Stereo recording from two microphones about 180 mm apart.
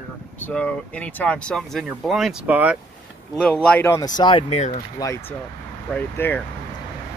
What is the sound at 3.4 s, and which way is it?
Speech, 5° left (ahead or behind).